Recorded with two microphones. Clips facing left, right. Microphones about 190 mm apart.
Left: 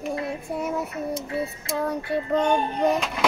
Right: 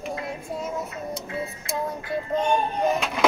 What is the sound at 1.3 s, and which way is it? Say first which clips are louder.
Child singing: left 3 dB; 65° left (ahead or behind).